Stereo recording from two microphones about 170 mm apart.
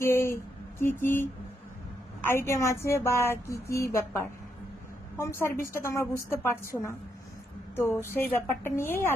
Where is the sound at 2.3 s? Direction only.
15° left (ahead or behind).